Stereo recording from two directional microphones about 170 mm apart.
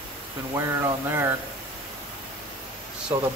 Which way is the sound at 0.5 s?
15° right (ahead or behind).